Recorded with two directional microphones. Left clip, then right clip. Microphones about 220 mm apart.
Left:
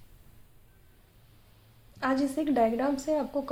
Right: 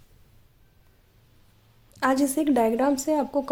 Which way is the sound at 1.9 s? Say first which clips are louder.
Right 6 dB; 50° right (ahead or behind).